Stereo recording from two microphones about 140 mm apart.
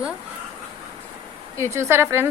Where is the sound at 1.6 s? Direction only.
20° right (ahead or behind).